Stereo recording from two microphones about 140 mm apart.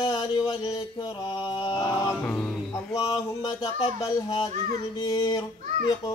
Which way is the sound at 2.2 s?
15° left (ahead or behind).